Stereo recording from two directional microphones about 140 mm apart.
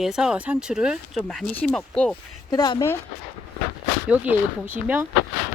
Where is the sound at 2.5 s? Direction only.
30° left (ahead or behind).